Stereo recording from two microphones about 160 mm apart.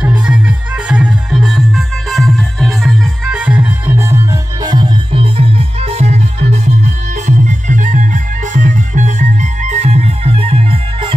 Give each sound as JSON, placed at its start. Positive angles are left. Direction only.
{"t": 0.0, "sound": "music", "side_deg": -5}
{"t": 4.6, "sound": "music", "side_deg": -30}